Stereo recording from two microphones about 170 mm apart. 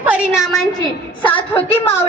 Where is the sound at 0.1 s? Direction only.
5° right (ahead or behind).